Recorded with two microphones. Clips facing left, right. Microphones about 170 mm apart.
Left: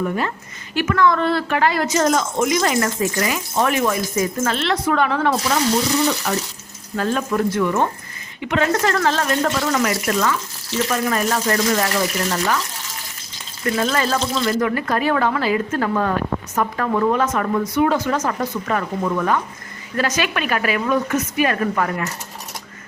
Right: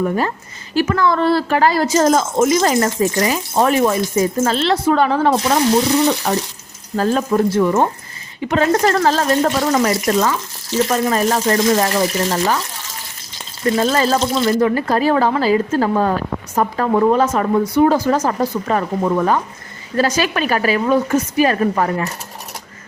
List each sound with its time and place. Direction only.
0.0 s speech: 35° right (ahead or behind)
13.7 s speech: 30° right (ahead or behind)